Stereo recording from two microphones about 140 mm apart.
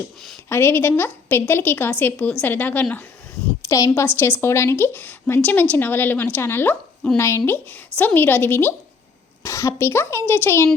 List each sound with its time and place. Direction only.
0.4 s a woman's voice: 15° left (ahead or behind)